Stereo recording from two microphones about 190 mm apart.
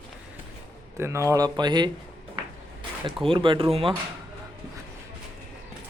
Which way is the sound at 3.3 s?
25° right (ahead or behind).